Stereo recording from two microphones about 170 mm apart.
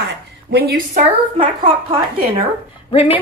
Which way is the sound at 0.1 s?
75° right (ahead or behind).